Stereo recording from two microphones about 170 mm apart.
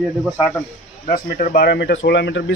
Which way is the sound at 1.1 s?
50° left (ahead or behind).